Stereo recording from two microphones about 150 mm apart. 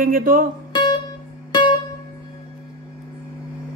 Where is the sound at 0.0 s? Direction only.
70° right (ahead or behind).